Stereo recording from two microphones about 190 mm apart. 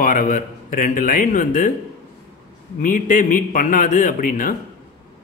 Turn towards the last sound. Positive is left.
turn(degrees=45)  # may be behind; listen again after turning